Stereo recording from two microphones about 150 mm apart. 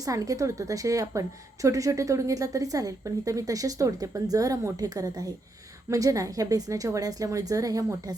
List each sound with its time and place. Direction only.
0.0 s a woman's voice: 25° right (ahead or behind)